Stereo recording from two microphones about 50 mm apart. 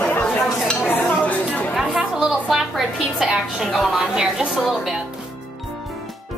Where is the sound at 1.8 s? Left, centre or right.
Centre.